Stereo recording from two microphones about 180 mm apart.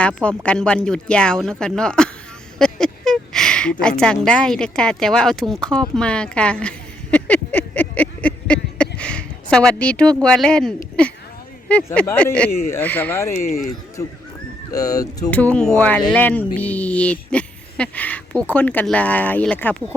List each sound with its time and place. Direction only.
0.0 s a woman's voice: 5° left (ahead or behind)
6.0 s a sound: 5° left (ahead or behind)
11.7 s speech: 5° left (ahead or behind)
14.7 s speech: 20° left (ahead or behind)
15.3 s speech: 10° left (ahead or behind)